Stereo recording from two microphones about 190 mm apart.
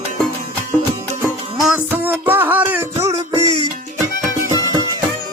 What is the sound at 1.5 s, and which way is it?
Music, 5° right (ahead or behind).